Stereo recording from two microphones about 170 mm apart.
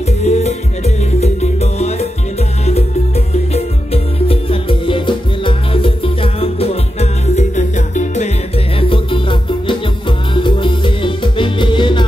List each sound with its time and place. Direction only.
0.2 s music: 40° left (ahead or behind)
3.5 s music: 35° left (ahead or behind)
8.7 s music: 30° left (ahead or behind)